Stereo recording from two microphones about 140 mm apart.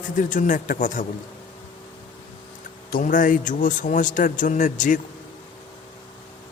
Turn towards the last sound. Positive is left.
turn(degrees=65)  # may be behind; listen again after turning